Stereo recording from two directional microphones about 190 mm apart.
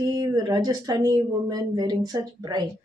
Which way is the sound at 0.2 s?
20° right (ahead or behind).